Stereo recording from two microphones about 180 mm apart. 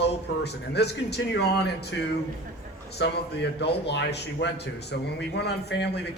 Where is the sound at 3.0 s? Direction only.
70° left (ahead or behind).